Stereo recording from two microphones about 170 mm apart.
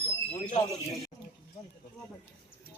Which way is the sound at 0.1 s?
5° left (ahead or behind).